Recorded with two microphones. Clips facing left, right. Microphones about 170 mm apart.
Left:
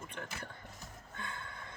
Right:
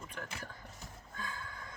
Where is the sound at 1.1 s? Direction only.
25° left (ahead or behind).